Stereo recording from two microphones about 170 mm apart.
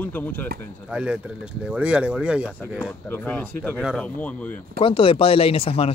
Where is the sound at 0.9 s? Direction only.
5° right (ahead or behind).